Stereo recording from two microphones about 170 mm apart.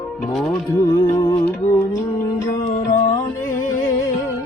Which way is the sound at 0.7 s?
20° left (ahead or behind).